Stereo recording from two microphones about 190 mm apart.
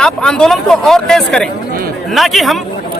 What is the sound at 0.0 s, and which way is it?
Speech, 5° left (ahead or behind).